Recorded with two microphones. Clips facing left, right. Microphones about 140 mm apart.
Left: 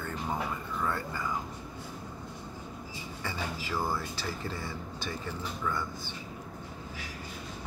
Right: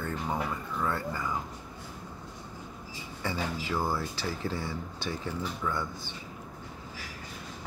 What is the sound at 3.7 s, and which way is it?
Speech, 15° right (ahead or behind).